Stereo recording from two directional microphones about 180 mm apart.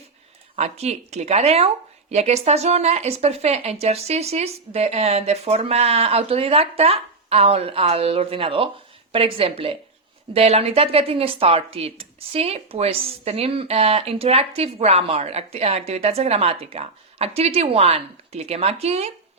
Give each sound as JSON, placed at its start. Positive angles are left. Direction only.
{"t": 0.5, "sound": "speech", "side_deg": -35}